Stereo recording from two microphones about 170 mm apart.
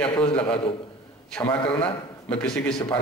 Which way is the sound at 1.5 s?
30° left (ahead or behind).